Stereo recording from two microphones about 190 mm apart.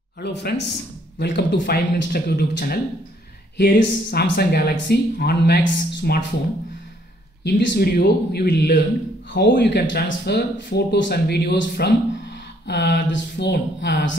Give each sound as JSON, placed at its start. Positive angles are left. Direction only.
{"t": 0.2, "sound": "speech", "side_deg": 60}
{"t": 7.4, "sound": "speech", "side_deg": 65}